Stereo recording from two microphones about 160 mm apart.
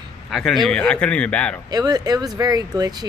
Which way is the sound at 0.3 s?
Centre (ahead or behind).